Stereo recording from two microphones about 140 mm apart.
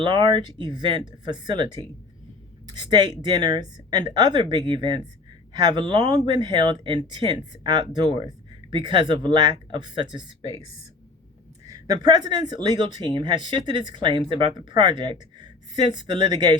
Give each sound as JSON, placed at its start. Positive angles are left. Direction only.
{"t": 0.0, "sound": "speech", "side_deg": -35}
{"t": 2.9, "sound": "speech", "side_deg": -30}
{"t": 11.7, "sound": "speech", "side_deg": -30}